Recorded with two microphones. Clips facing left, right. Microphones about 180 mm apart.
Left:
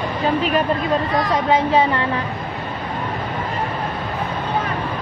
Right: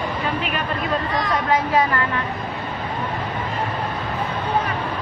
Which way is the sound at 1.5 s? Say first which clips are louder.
Left 3 dB; 25° left (ahead or behind).